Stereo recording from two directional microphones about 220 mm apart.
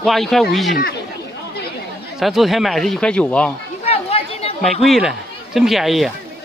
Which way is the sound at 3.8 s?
25° left (ahead or behind).